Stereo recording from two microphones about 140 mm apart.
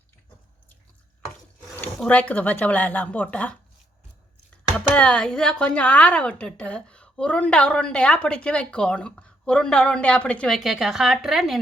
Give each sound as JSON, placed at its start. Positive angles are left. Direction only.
{"t": 2.0, "sound": "a woman's voice", "side_deg": 10}
{"t": 4.9, "sound": "a woman's voice", "side_deg": 5}